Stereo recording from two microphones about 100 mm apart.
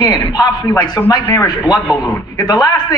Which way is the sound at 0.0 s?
40° left (ahead or behind).